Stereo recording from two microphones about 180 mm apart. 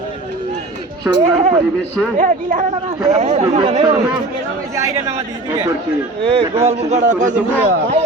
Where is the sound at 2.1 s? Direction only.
45° right (ahead or behind); by 3.9 s 25° right (ahead or behind).